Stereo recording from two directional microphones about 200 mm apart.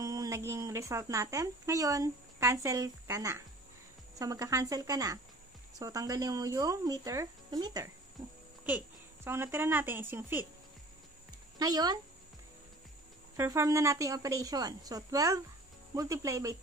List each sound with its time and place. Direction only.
0.0 s a woman's voice: 15° right (ahead or behind)
11.5 s speech: 20° right (ahead or behind)
13.4 s speech: 15° right (ahead or behind)